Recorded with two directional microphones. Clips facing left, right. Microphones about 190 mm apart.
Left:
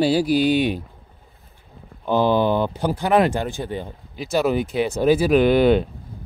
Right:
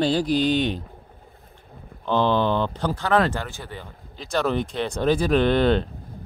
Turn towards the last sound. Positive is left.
turn(degrees=10)  # may be behind; listen again after turning